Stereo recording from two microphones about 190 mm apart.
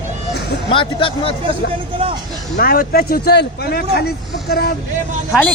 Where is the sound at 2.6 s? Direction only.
55° left (ahead or behind).